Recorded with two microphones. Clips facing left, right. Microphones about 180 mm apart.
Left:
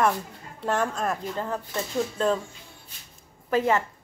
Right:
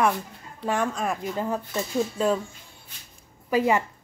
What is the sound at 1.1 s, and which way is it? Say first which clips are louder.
Speech: right 2 dB; 10° right (ahead or behind).